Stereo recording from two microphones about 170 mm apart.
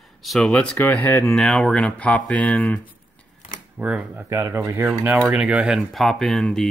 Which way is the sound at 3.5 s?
10° right (ahead or behind).